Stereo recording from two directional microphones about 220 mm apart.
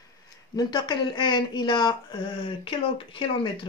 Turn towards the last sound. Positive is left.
turn(degrees=25)  # may be behind; listen again after turning